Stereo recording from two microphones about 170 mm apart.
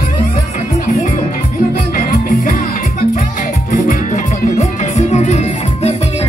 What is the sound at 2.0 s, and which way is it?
Music, 55° left (ahead or behind).